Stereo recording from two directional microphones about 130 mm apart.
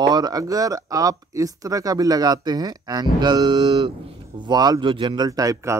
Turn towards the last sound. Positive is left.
turn(degrees=-25)  # may be behind; listen again after turning